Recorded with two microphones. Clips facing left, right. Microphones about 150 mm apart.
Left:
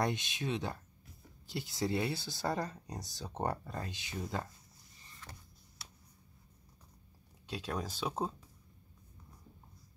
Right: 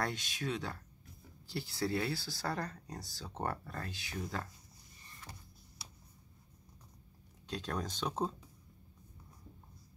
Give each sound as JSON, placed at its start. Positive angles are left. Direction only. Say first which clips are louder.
{"t": 0.0, "sound": "speech", "louder": "left 3 dB", "side_deg": 20}
{"t": 7.4, "sound": "speech", "louder": "even", "side_deg": 5}